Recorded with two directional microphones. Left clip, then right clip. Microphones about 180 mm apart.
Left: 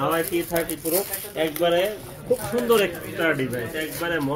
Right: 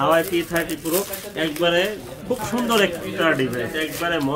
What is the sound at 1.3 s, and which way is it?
Speech, 30° right (ahead or behind).